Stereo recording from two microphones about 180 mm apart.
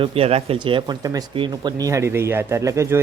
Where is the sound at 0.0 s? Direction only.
35° right (ahead or behind).